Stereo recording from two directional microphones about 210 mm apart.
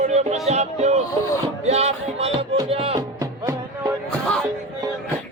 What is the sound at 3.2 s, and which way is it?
Music, 15° right (ahead or behind).